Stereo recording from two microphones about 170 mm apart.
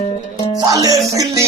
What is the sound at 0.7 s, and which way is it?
Music, 20° right (ahead or behind).